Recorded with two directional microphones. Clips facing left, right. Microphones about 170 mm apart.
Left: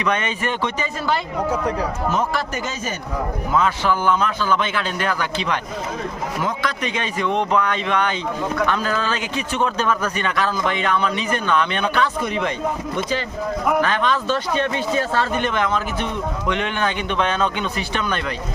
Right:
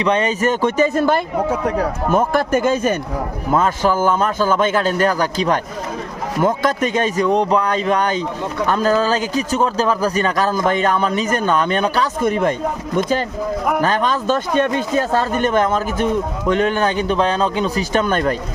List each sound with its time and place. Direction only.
0.0 s speech: 30° right (ahead or behind); by 3.0 s 55° right (ahead or behind)
3.5 s speech: 45° right (ahead or behind)